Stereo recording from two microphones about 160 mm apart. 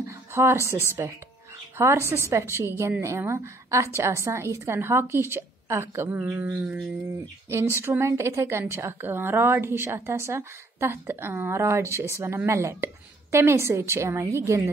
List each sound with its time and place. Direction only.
0.1 s a woman's voice: 15° right (ahead or behind)